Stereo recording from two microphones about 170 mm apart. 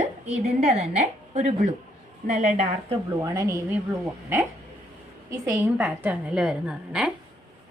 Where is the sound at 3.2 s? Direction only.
20° right (ahead or behind).